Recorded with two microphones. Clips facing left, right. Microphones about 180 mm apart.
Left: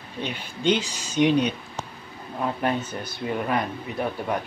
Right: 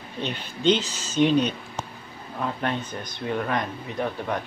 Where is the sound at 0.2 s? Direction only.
10° left (ahead or behind).